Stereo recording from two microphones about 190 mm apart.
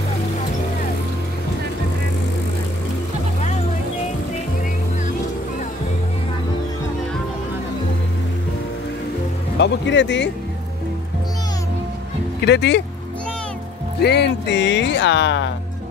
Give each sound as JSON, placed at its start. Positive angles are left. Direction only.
{"t": 9.6, "sound": "speech", "side_deg": 70}
{"t": 12.4, "sound": "speech", "side_deg": 65}
{"t": 14.0, "sound": "speech", "side_deg": 65}